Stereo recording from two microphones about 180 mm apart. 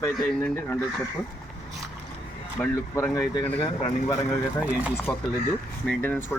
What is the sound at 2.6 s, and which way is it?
Speech, 15° left (ahead or behind).